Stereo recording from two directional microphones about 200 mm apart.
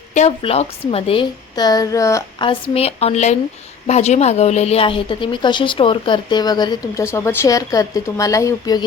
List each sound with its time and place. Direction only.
0.1 s a woman's voice: 35° left (ahead or behind)